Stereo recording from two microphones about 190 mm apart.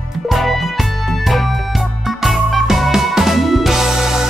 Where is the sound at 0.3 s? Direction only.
Centre (ahead or behind).